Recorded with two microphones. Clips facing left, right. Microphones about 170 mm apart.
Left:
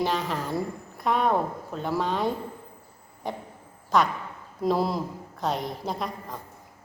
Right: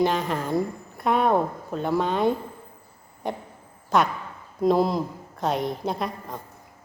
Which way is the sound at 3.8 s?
Centre (ahead or behind).